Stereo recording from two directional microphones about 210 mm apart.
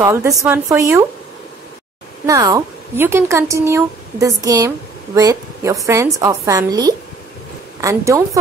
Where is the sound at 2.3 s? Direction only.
15° right (ahead or behind).